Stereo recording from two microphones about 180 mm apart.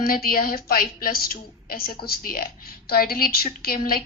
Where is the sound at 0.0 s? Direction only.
55° left (ahead or behind).